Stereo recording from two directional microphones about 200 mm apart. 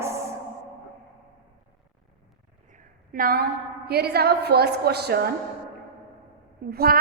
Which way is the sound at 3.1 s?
45° right (ahead or behind).